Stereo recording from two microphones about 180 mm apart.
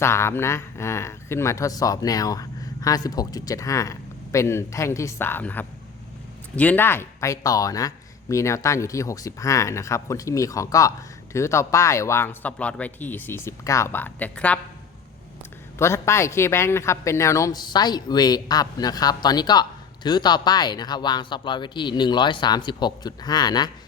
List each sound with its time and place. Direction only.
0.0 s speech: 15° left (ahead or behind)
15.8 s a man's voice: 15° left (ahead or behind)